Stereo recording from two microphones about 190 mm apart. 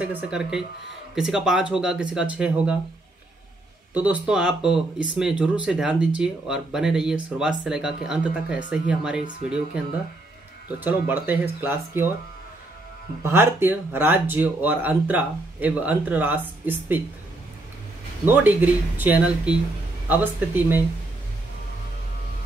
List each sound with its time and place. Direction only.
0.0 s speech: 5° right (ahead or behind)
3.9 s speech: 5° right (ahead or behind)
10.8 s speech: 10° right (ahead or behind)
13.2 s speech: 10° right (ahead or behind)
18.2 s speech: 10° right (ahead or behind)